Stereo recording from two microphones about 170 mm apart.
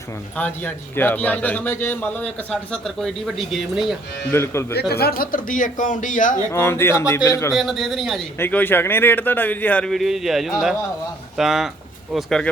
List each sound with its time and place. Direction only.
0.3 s a man's voice: 10° left (ahead or behind)
4.3 s a man's voice: 15° left (ahead or behind)
4.7 s speech: 70° left (ahead or behind); by 6.4 s 50° left (ahead or behind)
6.5 s a man's voice: 15° left (ahead or behind)
7.5 s a man's voice: centre (ahead or behind)
8.4 s a man's voice: 10° left (ahead or behind)